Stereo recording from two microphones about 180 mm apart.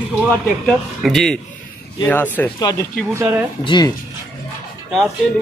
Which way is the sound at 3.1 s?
15° right (ahead or behind).